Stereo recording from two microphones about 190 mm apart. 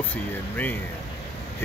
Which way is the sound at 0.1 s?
10° left (ahead or behind).